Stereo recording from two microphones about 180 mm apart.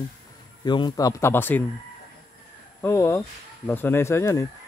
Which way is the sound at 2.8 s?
15° left (ahead or behind).